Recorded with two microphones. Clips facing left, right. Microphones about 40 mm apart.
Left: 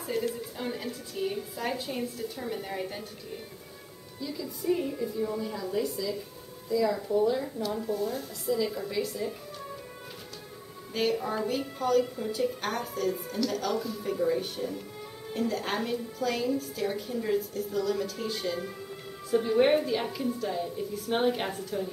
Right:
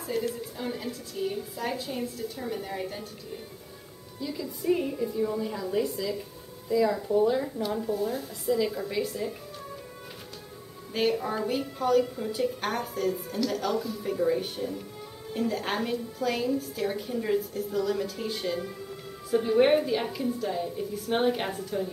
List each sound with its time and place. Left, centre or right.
0.0 s a sound: centre
1.1 s a woman's voice: centre
1.7 s a woman's voice: centre
4.2 s a woman's voice: centre
4.9 s a woman's voice: centre
7.8 s a woman's voice: centre
11.0 s a woman's voice: centre